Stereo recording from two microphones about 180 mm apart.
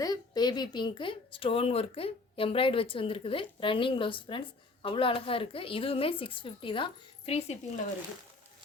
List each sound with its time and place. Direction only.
0.0 s speech: 20° left (ahead or behind)